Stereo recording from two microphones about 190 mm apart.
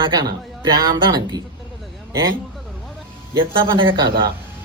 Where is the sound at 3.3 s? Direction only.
25° right (ahead or behind).